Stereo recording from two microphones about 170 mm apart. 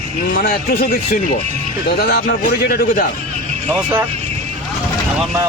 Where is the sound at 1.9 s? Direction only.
65° left (ahead or behind).